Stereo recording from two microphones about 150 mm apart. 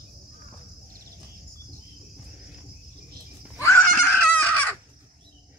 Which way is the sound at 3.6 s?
15° left (ahead or behind).